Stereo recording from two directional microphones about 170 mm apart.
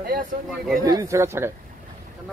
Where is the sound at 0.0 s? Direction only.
60° right (ahead or behind).